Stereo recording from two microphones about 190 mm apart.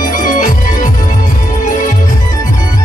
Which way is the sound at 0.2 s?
45° left (ahead or behind).